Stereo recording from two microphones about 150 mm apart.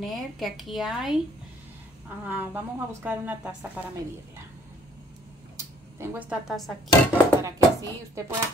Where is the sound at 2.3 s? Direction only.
15° right (ahead or behind).